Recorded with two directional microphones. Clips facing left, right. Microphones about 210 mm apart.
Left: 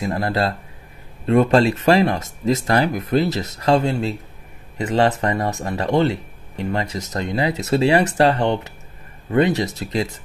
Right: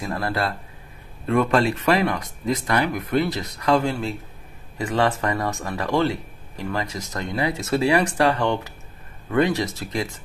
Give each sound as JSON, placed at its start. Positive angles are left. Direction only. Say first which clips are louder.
{"t": 0.0, "sound": "speech", "louder": "left 4 dB", "side_deg": 20}